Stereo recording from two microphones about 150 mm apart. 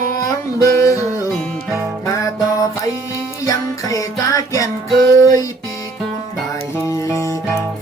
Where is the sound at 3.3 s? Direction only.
20° left (ahead or behind).